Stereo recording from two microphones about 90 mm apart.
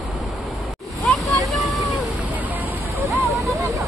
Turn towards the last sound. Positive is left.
turn(degrees=0)  # may be behind; listen again after turning